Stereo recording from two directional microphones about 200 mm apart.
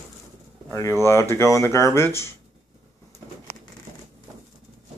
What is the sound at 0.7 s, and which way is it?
Speech, 15° left (ahead or behind).